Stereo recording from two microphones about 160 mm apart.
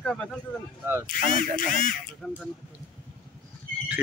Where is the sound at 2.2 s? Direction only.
Centre (ahead or behind).